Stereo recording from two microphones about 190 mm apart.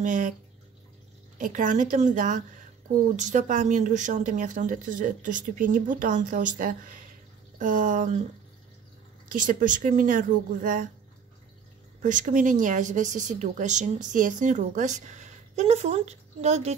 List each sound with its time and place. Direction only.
0.0 s speech: 45° right (ahead or behind)
1.4 s speech: 45° right (ahead or behind)
9.3 s speech: 45° right (ahead or behind)
12.0 s speech: 40° right (ahead or behind)